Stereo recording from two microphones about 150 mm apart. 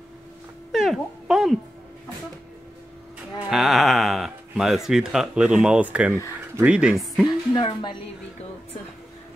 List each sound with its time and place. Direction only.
0.7 s music: centre (ahead or behind)
3.4 s speech: centre (ahead or behind)
7.2 s speech: 30° left (ahead or behind)